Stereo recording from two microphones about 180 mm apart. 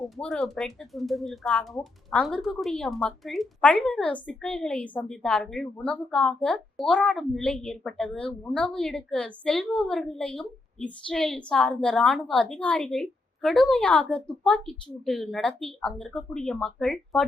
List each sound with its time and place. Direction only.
0.2 s speech: 5° left (ahead or behind)